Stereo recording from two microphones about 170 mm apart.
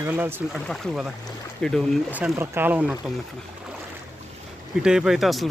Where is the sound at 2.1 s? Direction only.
10° right (ahead or behind).